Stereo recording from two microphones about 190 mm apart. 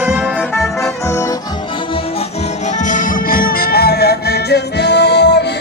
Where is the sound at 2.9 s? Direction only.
45° left (ahead or behind); by 5.5 s 65° left (ahead or behind).